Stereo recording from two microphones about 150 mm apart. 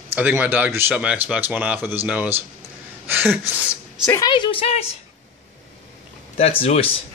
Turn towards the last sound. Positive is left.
turn(degrees=40)  # may be behind; listen again after turning